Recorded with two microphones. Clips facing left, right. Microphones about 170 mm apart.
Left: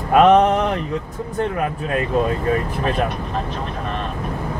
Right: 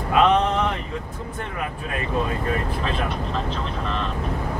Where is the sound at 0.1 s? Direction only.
50° left (ahead or behind).